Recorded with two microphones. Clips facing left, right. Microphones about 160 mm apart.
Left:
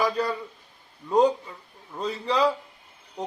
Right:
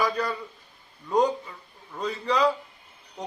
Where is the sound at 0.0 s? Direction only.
30° left (ahead or behind).